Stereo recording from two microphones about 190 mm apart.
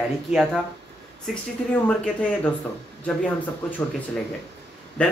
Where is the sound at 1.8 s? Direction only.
5° left (ahead or behind).